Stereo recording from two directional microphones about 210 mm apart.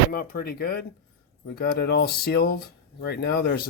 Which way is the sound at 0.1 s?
45° left (ahead or behind).